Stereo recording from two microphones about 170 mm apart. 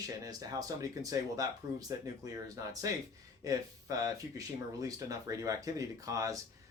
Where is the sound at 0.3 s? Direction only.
20° right (ahead or behind).